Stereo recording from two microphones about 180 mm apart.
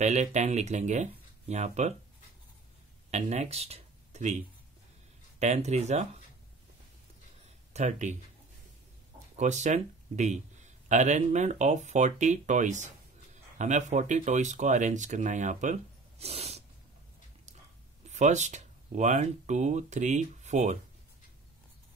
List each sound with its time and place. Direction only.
0.0 s speech: 40° right (ahead or behind)
3.1 s speech: 40° right (ahead or behind)
5.4 s speech: 40° right (ahead or behind)
7.7 s speech: 40° right (ahead or behind)
9.4 s speech: 40° right (ahead or behind)
18.0 s speech: 40° right (ahead or behind)